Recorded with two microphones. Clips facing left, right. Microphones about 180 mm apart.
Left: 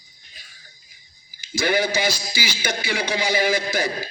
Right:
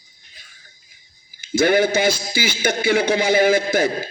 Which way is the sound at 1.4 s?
50° right (ahead or behind).